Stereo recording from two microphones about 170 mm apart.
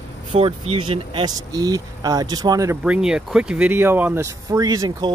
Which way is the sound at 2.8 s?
5° right (ahead or behind).